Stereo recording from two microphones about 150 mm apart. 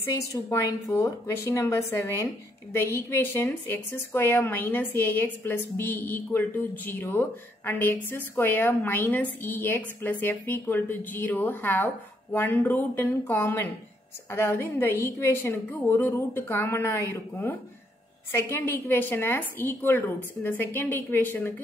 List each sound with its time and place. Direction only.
0.1 s a woman's voice: 20° left (ahead or behind)